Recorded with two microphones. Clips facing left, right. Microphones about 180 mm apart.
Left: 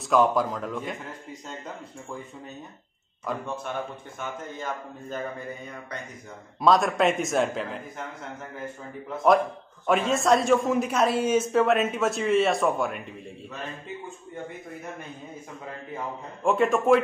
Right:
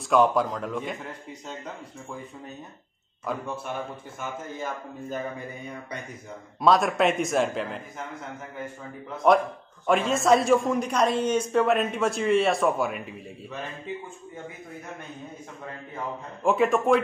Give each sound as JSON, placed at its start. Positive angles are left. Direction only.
{"t": 0.1, "sound": "a man's voice", "side_deg": 0}
{"t": 3.3, "sound": "a man's voice", "side_deg": -10}
{"t": 6.6, "sound": "a man's voice", "side_deg": 0}
{"t": 9.3, "sound": "a man's voice", "side_deg": 0}
{"t": 16.4, "sound": "a man's voice", "side_deg": 0}